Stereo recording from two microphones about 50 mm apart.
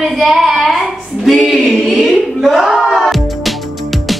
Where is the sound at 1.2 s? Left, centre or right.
Centre.